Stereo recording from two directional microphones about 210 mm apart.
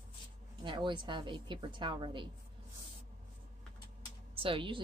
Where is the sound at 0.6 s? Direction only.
20° right (ahead or behind).